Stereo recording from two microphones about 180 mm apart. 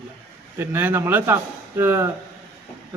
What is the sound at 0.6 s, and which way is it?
A man's voice, 10° right (ahead or behind).